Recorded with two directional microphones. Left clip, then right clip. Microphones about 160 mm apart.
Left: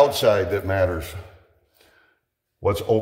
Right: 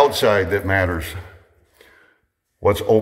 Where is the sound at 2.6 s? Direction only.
15° right (ahead or behind).